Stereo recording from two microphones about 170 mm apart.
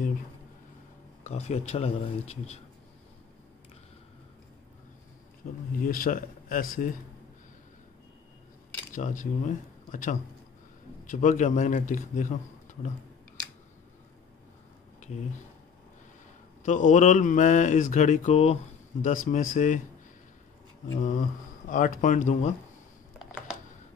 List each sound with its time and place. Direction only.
1.2 s speech: 40° left (ahead or behind)
5.4 s speech: 55° left (ahead or behind)
5.8 s mantra: 55° left (ahead or behind)
8.9 s speech: 50° left (ahead or behind)
11.1 s mantra: 50° left (ahead or behind)
16.6 s mantra: 45° left (ahead or behind)
18.9 s mantra: 50° left (ahead or behind)
21.0 s mantra: 50° left (ahead or behind)
23.1 s a sound: centre (ahead or behind)